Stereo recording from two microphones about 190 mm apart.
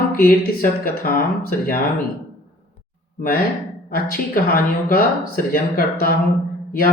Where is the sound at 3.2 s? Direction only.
50° left (ahead or behind).